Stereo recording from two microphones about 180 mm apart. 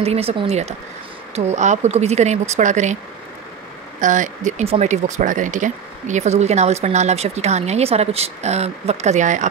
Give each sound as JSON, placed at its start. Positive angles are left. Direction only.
{"t": 0.0, "sound": "speech", "side_deg": -35}
{"t": 4.0, "sound": "speech", "side_deg": -45}